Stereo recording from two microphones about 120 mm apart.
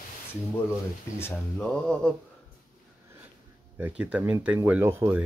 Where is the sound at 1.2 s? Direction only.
10° left (ahead or behind).